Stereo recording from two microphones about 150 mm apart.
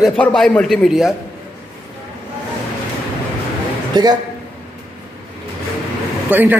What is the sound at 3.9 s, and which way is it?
Speech, 30° right (ahead or behind).